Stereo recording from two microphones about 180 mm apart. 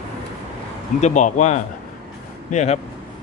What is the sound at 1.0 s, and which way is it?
Speech, 40° left (ahead or behind).